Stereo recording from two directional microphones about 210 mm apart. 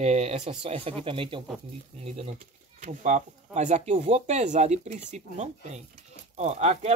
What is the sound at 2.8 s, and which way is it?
Speech, 35° right (ahead or behind).